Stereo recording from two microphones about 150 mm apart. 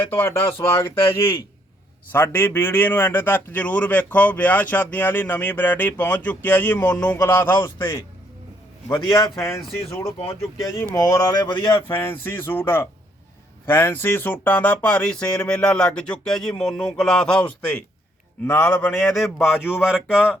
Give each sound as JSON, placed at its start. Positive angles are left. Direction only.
{"t": 0.0, "sound": "a man's voice", "side_deg": 15}
{"t": 10.8, "sound": "speech", "side_deg": 20}
{"t": 11.9, "sound": "a man's voice", "side_deg": 15}